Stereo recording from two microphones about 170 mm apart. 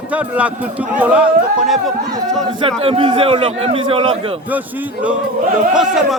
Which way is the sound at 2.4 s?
30° right (ahead or behind).